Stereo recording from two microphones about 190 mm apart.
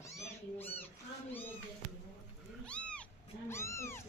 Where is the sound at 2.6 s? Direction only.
5° left (ahead or behind).